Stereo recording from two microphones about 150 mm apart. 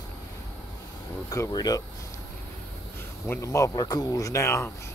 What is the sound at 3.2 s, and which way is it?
Speech, 15° left (ahead or behind).